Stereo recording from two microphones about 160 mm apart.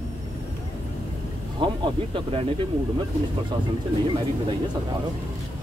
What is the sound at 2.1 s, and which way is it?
Speech, 35° right (ahead or behind).